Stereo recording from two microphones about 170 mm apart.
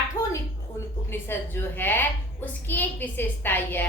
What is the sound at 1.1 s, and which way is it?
A child's voice, 15° left (ahead or behind).